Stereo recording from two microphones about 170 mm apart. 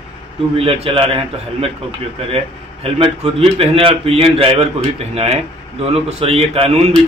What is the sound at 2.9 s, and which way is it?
A man's voice, 35° right (ahead or behind).